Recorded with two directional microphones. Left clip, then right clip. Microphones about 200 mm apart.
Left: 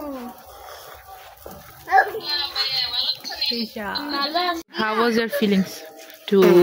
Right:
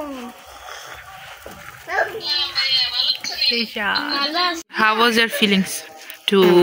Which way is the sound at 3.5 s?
5° right (ahead or behind).